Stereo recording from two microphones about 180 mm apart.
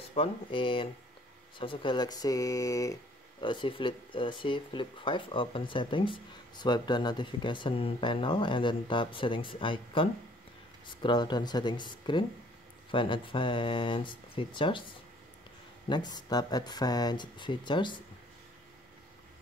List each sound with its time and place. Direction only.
0.1 s speech: 30° left (ahead or behind)
16.3 s speech: 20° left (ahead or behind)